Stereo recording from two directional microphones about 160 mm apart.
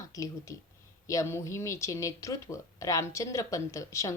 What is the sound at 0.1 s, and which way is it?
A woman's voice, 20° left (ahead or behind).